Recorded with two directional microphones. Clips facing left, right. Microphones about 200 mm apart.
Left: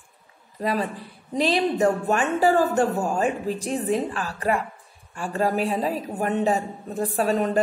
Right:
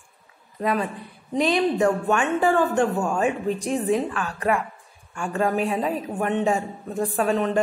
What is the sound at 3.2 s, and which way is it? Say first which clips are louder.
Speech: right 2 dB; centre (ahead or behind).